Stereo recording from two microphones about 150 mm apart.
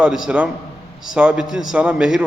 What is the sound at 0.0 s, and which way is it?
A man's voice, 5° right (ahead or behind).